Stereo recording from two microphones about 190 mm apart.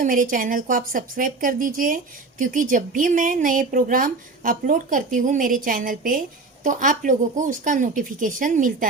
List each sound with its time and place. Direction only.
0.0 s speech: 45° right (ahead or behind)